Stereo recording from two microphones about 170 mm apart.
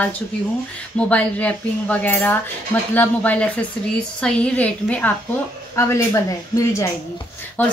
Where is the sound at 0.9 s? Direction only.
10° left (ahead or behind).